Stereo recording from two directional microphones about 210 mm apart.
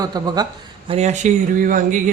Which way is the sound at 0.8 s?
30° right (ahead or behind).